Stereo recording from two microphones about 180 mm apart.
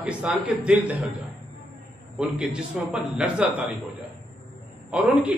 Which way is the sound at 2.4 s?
5° right (ahead or behind).